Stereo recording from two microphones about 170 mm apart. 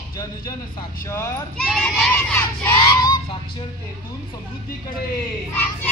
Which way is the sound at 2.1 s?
10° left (ahead or behind).